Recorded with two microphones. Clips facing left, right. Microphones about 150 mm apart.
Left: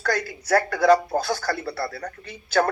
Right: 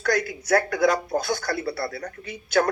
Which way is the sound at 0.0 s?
30° left (ahead or behind).